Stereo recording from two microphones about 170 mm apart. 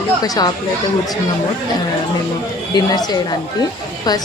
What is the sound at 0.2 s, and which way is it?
Speech, 25° left (ahead or behind).